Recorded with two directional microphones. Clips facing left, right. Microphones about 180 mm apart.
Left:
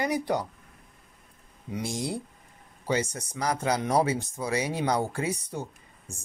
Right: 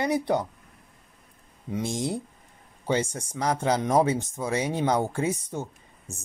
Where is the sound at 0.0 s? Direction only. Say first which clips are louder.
Right 3 dB; 25° right (ahead or behind).